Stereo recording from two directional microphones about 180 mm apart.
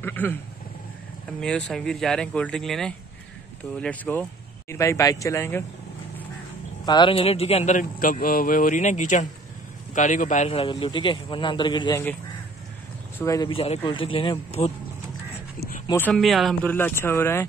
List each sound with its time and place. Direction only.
0.0 s speech: 10° left (ahead or behind)
1.4 s speech: 5° left (ahead or behind)
6.9 s a man's voice: 25° left (ahead or behind)
13.2 s speech: 15° left (ahead or behind)
13.5 s a man's voice: 30° left (ahead or behind)
16.1 s speech: centre (ahead or behind)
16.7 s speech: 10° left (ahead or behind)